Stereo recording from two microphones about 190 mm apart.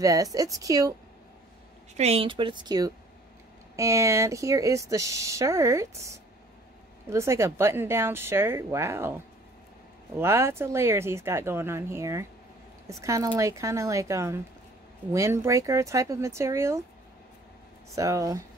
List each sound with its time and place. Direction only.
0.0 s speech: 20° right (ahead or behind)
2.0 s a woman's voice: 30° right (ahead or behind); by 16.8 s 15° right (ahead or behind)
17.9 s speech: 15° right (ahead or behind)